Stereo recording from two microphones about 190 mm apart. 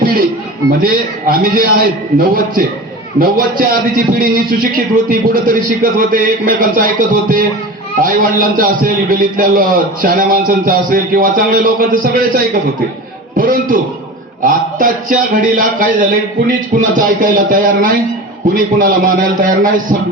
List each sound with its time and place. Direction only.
0.0 s a sound: 50° right (ahead or behind)
0.8 s a man's voice: 45° right (ahead or behind)
3.2 s a man's voice: 50° right (ahead or behind)